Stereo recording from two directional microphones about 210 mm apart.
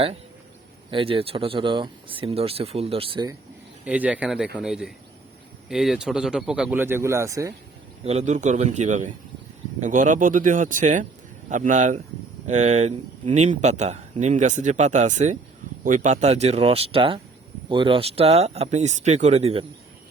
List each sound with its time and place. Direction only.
0.9 s speech: 25° right (ahead or behind)
3.8 s a man's voice: 5° right (ahead or behind)
8.0 s speech: 30° right (ahead or behind)